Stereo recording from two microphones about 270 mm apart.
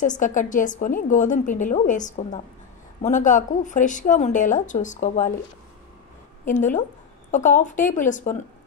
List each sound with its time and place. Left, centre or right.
0.0 s a woman's voice: left
6.4 s a woman's voice: left